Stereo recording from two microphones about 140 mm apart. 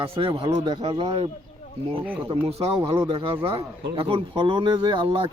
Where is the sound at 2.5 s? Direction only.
45° right (ahead or behind).